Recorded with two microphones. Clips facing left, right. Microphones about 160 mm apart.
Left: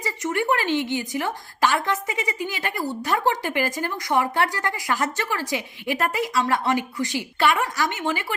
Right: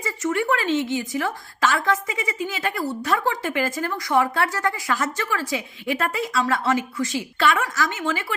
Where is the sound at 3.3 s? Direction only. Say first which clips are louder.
Even; 20° left (ahead or behind).